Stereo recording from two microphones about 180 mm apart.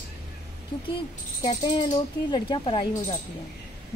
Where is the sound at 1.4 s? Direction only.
25° left (ahead or behind).